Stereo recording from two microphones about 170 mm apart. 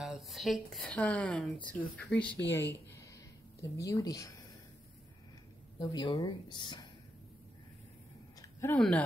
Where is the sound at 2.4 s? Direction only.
90° left.